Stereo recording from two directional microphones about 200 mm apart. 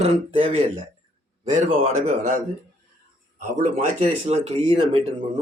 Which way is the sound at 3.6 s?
40° right (ahead or behind).